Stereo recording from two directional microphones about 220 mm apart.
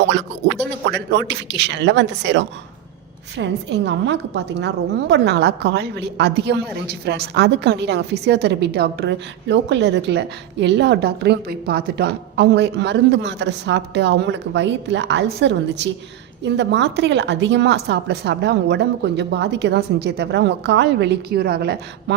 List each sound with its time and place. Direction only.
0.9 s a woman's voice: 55° right (ahead or behind)